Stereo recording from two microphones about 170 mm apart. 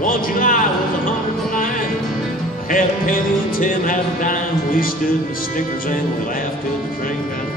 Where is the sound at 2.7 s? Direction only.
50° left (ahead or behind).